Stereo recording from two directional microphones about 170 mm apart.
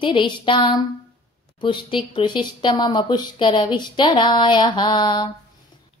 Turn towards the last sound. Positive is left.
turn(degrees=25)  # may be behind; listen again after turning